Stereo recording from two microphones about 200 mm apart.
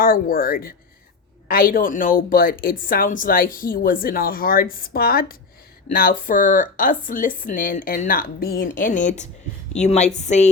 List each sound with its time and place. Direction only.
0.0 s a woman's voice: 45° left (ahead or behind)